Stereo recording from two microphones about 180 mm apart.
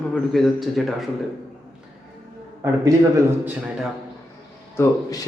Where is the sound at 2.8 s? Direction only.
15° right (ahead or behind).